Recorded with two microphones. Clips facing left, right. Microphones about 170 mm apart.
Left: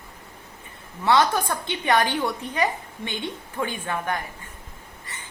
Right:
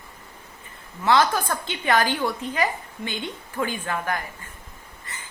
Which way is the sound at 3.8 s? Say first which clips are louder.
Even; 25° left (ahead or behind).